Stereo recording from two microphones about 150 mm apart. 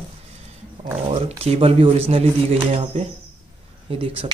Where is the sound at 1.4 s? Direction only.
40° right (ahead or behind).